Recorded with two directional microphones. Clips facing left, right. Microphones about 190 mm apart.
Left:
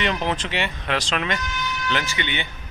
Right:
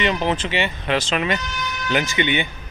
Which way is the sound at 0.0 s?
Centre (ahead or behind).